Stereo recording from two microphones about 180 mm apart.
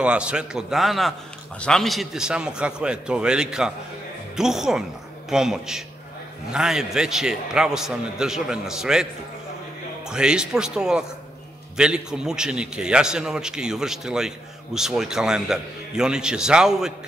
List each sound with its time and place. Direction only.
0.0 s a man's voice: 5° right (ahead or behind)
10.0 s a man's voice: 5° right (ahead or behind)